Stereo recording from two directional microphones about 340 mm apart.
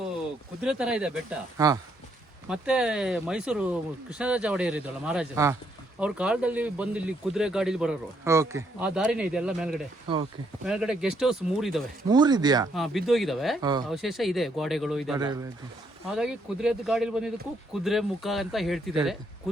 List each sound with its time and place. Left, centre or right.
0.6 s speech: centre
10.1 s speech: centre
10.7 s speech: centre
12.0 s speech: centre
12.7 s speech: centre
13.6 s speech: centre
13.9 s speech: centre
15.2 s speech: centre